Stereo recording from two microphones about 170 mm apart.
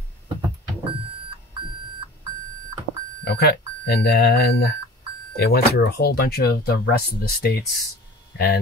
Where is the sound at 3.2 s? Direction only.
70° left (ahead or behind).